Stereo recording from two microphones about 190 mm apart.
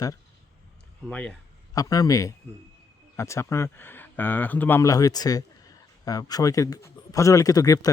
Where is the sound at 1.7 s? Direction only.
20° left (ahead or behind).